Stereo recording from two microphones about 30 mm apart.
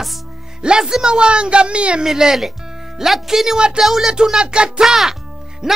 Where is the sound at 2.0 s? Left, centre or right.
Centre.